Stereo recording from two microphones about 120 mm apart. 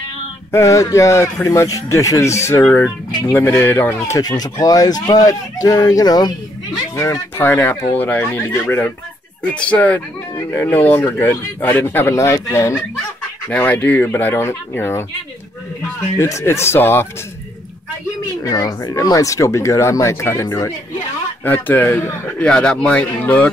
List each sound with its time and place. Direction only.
0.5 s speech: 25° left (ahead or behind)
4.2 s speech: 30° left (ahead or behind)
7.0 s speech: 20° left (ahead or behind)
13.5 s speech: 15° left (ahead or behind)
16.2 s speech: 20° left (ahead or behind)
18.4 s speech: 30° left (ahead or behind)
21.5 s speech: 15° left (ahead or behind)
22.4 s speech: 5° left (ahead or behind)